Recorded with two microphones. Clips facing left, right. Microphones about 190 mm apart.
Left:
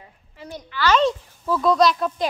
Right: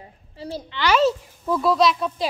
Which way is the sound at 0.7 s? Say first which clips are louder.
Even; 10° right (ahead or behind).